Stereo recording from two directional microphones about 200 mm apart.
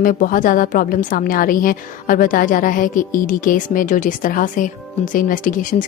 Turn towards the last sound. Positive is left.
turn(degrees=40)  # may be behind; listen again after turning